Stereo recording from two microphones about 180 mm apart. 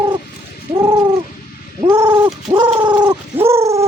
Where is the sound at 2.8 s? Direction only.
25° right (ahead or behind).